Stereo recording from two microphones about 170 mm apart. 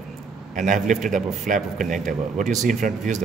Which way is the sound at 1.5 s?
50° right (ahead or behind).